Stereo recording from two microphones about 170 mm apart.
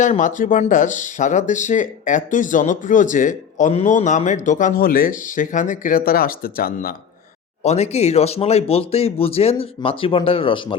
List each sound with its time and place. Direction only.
0.0 s speech: 45° left (ahead or behind)
7.6 s speech: 40° left (ahead or behind)